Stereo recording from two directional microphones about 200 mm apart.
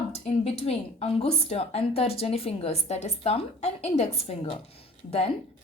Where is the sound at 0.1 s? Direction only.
30° left (ahead or behind).